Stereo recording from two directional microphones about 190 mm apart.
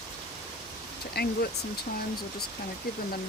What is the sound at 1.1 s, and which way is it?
Speech, 55° left (ahead or behind).